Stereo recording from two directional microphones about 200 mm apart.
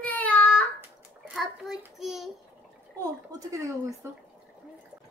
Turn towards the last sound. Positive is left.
turn(degrees=-15)  # may be behind; listen again after turning